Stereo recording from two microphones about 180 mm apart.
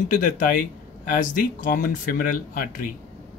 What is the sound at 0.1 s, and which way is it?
Speech, 50° left (ahead or behind).